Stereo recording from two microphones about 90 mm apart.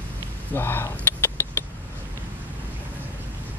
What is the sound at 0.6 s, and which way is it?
Speech, 25° left (ahead or behind).